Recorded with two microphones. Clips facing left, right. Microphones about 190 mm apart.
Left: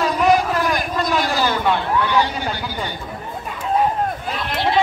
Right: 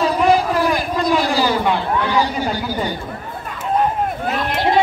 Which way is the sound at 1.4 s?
10° right (ahead or behind).